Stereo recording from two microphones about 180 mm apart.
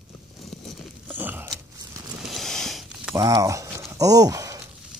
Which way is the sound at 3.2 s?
20° right (ahead or behind).